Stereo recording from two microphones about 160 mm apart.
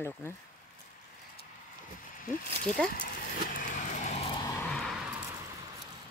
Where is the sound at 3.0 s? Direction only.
60° left (ahead or behind).